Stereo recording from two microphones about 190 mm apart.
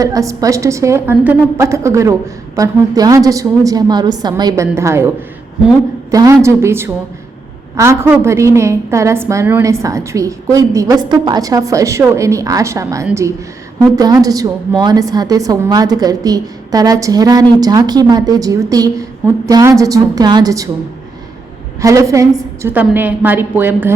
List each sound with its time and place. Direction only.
0.0 s a woman's voice: 15° right (ahead or behind)
21.8 s a woman's voice: 15° right (ahead or behind)